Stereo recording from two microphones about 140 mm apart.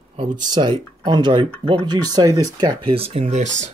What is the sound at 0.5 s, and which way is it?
Speech, 30° right (ahead or behind).